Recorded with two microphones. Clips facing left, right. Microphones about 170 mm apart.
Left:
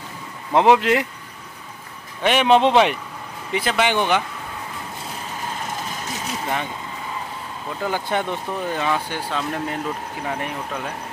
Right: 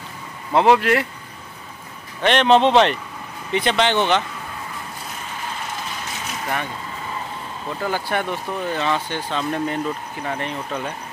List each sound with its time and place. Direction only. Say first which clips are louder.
0.5 s speech: even; 15° left (ahead or behind)
2.2 s speech: right 1 dB; 10° left (ahead or behind)
6.4 s speech: even; 15° left (ahead or behind)
7.8 s speech: even; 15° left (ahead or behind)